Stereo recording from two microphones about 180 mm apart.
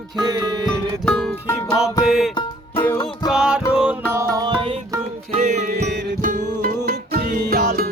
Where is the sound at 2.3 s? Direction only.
30° left (ahead or behind).